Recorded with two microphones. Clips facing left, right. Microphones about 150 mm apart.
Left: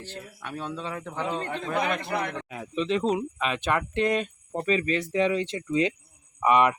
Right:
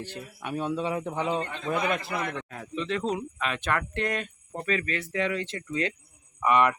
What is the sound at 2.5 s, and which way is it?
Speech, 15° left (ahead or behind).